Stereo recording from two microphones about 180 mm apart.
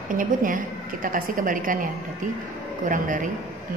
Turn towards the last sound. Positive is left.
turn(degrees=-45)  # may be behind; listen again after turning